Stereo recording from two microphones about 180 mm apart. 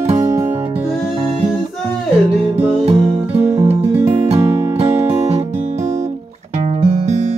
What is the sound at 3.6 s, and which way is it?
Music, 35° right (ahead or behind).